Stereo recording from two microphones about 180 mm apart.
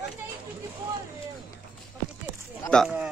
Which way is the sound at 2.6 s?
5° left (ahead or behind).